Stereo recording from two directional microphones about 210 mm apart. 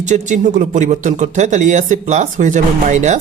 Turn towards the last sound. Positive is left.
turn(degrees=-35)  # may be behind; listen again after turning